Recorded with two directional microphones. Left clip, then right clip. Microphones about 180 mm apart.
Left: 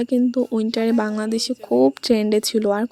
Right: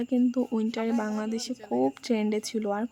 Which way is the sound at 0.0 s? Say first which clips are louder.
Left 7 dB; 20° left (ahead or behind).